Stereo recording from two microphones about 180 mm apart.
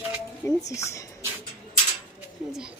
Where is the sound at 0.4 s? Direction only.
15° left (ahead or behind).